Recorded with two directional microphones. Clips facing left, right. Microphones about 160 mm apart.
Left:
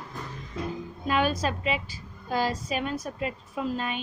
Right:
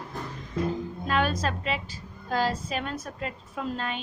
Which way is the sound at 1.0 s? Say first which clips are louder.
Left 1 dB; 10° left (ahead or behind).